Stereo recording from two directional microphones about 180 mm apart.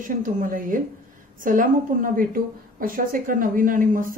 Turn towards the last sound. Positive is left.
turn(degrees=-50)  # may be behind; listen again after turning